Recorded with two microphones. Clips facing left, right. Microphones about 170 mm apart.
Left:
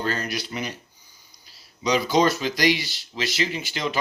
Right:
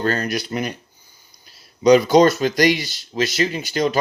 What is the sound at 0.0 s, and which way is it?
Speech, 50° right (ahead or behind).